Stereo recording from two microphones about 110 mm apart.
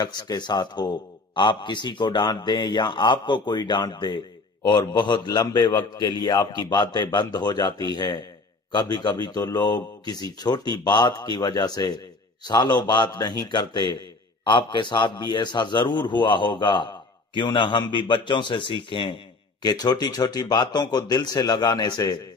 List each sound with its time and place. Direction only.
0.0 s a man's voice: 40° left (ahead or behind)